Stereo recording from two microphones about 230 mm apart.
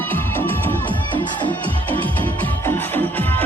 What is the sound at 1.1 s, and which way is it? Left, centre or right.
Music, centre.